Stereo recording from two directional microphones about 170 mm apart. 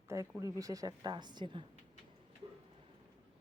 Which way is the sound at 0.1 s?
20° right (ahead or behind).